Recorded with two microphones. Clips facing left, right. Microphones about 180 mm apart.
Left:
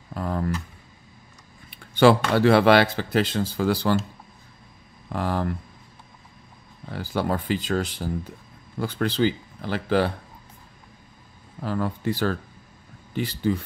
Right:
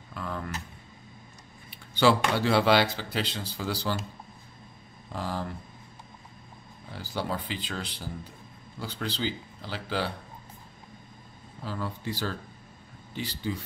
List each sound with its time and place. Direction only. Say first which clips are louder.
0.1 s a sound: left 8 dB; 40° left (ahead or behind)
2.0 s speech: left 6 dB; 55° left (ahead or behind)
5.1 s speech: left 7 dB; 60° left (ahead or behind)
6.9 s speech: left 7 dB; 55° left (ahead or behind)
11.6 s speech: left 8 dB; 55° left (ahead or behind)